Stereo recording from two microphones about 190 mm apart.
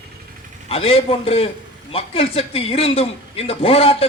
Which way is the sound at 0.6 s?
30° left (ahead or behind).